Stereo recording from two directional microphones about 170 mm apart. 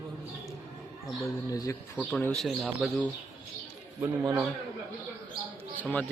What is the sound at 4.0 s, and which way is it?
Speech, 20° right (ahead or behind).